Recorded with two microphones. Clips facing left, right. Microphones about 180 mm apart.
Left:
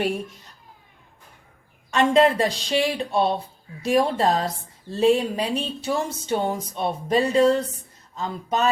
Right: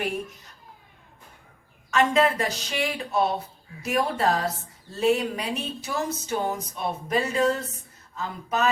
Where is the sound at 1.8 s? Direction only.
30° left (ahead or behind).